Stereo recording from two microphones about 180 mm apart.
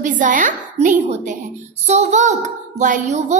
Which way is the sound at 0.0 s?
45° right (ahead or behind).